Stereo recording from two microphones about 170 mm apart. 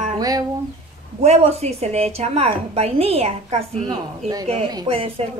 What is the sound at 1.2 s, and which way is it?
A woman's voice, 40° right (ahead or behind).